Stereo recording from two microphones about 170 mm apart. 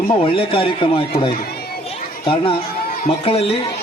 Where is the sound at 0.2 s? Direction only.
35° left (ahead or behind).